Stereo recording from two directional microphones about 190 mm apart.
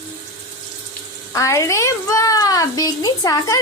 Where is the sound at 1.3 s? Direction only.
15° left (ahead or behind).